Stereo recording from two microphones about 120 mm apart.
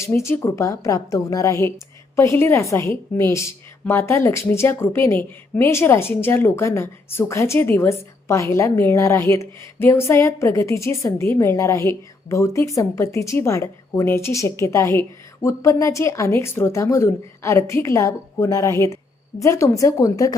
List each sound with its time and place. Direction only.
0.0 s a woman's voice: 20° left (ahead or behind)